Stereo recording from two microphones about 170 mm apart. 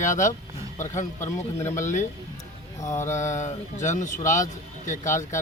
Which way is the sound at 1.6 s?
50° left (ahead or behind).